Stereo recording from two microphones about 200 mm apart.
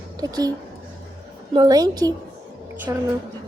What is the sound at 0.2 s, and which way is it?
Speech, 20° right (ahead or behind).